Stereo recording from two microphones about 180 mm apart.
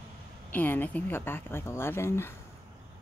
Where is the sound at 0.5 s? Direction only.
10° left (ahead or behind).